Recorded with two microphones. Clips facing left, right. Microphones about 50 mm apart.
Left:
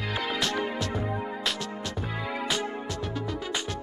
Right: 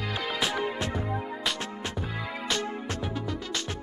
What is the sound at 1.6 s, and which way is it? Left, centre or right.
Music, right.